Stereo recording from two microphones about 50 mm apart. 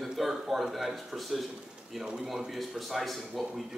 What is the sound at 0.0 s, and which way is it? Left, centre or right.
Speech, centre.